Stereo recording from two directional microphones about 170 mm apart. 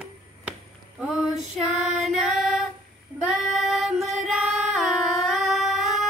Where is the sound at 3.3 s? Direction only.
Centre (ahead or behind).